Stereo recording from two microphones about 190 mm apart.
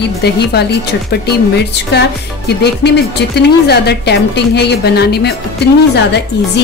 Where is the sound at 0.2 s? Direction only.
60° left (ahead or behind).